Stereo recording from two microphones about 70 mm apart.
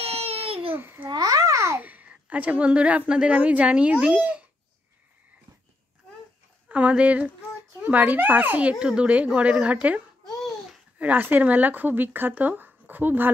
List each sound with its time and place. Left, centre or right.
0.7 s a child's voice: right
1.0 s babbling: right
1.8 s a woman's voice: right
6.7 s speech: centre
10.2 s babbling: centre
11.0 s speech: right